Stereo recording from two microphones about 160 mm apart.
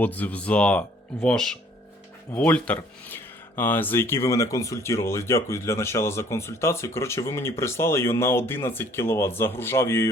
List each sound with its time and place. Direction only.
0.0 s speech: 10° left (ahead or behind)